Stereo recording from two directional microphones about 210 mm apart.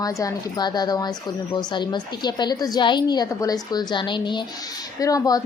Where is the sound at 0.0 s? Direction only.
15° left (ahead or behind).